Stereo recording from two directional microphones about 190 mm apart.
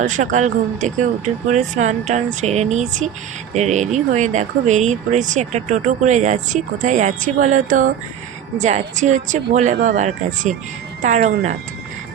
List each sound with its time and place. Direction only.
0.0 s speech: 40° right (ahead or behind)